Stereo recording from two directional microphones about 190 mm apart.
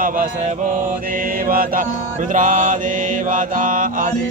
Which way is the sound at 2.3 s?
45° right (ahead or behind).